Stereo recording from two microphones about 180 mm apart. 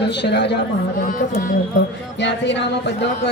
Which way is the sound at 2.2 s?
80° left.